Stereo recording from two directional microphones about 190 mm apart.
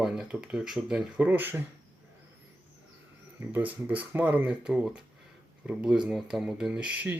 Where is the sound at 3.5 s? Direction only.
10° right (ahead or behind).